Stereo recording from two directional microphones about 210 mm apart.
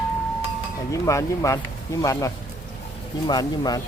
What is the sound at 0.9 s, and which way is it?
Speech, 15° left (ahead or behind).